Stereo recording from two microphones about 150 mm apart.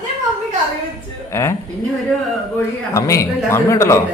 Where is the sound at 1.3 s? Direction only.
15° left (ahead or behind).